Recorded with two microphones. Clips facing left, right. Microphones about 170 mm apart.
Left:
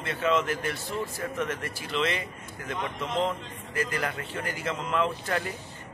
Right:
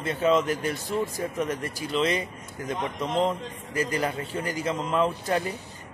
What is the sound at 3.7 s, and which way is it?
Speech, 15° right (ahead or behind).